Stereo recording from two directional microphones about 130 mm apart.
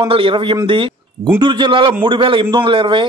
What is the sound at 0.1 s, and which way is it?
A man's voice, 45° right (ahead or behind).